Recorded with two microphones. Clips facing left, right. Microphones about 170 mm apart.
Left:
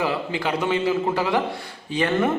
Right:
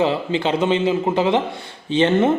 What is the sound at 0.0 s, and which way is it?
A man's voice, 25° right (ahead or behind).